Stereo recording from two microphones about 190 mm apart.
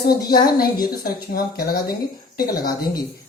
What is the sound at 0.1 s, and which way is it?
Speech, 55° left (ahead or behind).